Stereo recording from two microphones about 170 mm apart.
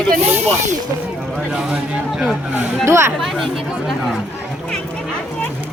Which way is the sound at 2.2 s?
Centre (ahead or behind).